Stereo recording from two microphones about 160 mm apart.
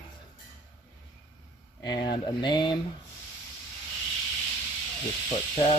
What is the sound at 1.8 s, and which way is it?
Speech, 30° left (ahead or behind).